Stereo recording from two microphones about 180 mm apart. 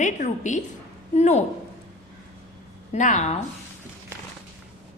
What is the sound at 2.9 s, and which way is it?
Speech, 45° left (ahead or behind).